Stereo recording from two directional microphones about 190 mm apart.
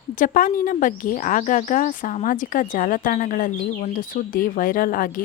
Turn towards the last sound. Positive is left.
turn(degrees=50)  # may be behind; listen again after turning